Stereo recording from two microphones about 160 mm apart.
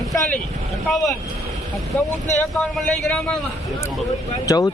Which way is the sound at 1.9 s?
10° left (ahead or behind).